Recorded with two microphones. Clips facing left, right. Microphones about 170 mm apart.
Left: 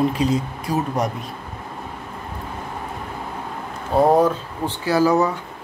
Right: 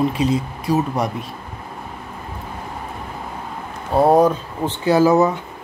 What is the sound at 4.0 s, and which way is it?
Speech, 10° right (ahead or behind).